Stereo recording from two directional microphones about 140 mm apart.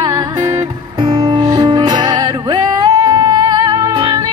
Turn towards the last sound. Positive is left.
turn(degrees=-25)  # may be behind; listen again after turning